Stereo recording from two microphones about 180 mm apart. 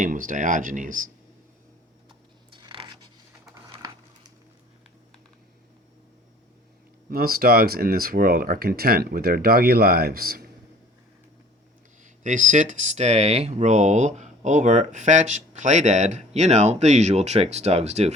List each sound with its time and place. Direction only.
0.0 s speech: 50° right (ahead or behind)
2.5 s a sound: 25° right (ahead or behind)
7.1 s speech: 55° right (ahead or behind)
12.0 s speech: 45° right (ahead or behind)